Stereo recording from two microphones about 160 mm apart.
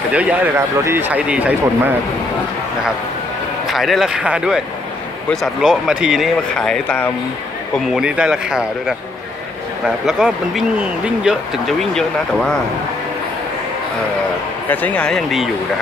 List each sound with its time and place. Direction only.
0.1 s speech: 10° right (ahead or behind)
3.6 s speech: centre (ahead or behind)
7.9 s speech: 5° right (ahead or behind)
14.7 s speech: 10° left (ahead or behind)